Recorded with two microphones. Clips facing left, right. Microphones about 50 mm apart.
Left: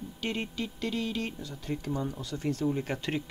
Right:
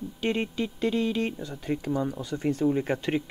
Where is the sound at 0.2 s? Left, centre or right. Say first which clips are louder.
Right 6 dB; right.